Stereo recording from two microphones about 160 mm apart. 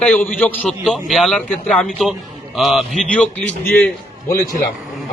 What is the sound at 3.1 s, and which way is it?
Speech, 10° left (ahead or behind).